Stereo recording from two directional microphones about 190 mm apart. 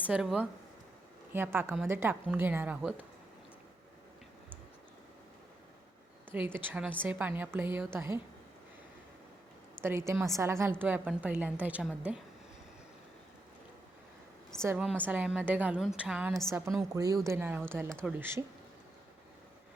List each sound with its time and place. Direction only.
0.1 s a woman's voice: 5° right (ahead or behind)
6.3 s a woman's voice: 10° right (ahead or behind)
9.8 s a woman's voice: 15° right (ahead or behind)
14.6 s a woman's voice: 15° right (ahead or behind)
16.5 s a woman's voice: 15° right (ahead or behind)